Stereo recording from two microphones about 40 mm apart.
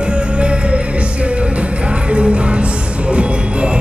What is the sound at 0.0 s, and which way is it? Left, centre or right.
Music, right.